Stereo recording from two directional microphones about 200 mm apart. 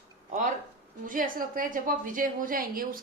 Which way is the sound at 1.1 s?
45° right (ahead or behind).